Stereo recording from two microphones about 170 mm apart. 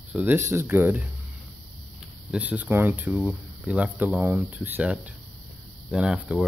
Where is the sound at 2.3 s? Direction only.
10° right (ahead or behind).